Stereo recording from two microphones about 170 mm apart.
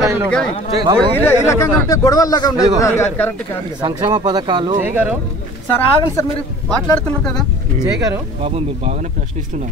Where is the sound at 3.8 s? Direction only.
25° right (ahead or behind).